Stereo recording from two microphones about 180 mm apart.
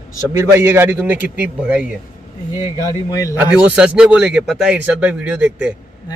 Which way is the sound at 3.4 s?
5° right (ahead or behind).